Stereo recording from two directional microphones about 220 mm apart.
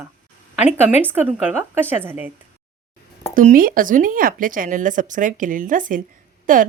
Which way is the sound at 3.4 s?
40° right (ahead or behind).